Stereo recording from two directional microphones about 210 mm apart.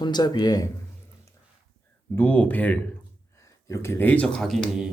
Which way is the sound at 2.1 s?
10° left (ahead or behind).